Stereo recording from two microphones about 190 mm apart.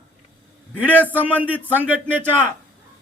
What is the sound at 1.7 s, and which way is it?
Speech, 10° right (ahead or behind).